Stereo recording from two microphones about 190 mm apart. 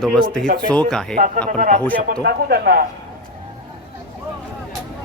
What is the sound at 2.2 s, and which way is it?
Speech, 55° right (ahead or behind).